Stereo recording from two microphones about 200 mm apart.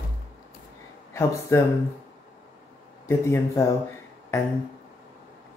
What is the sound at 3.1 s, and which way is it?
Speech, 15° left (ahead or behind).